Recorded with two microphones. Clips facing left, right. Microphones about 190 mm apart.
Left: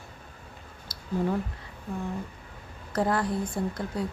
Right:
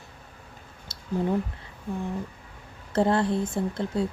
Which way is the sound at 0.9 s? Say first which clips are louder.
Left 1 dB; 25° right (ahead or behind).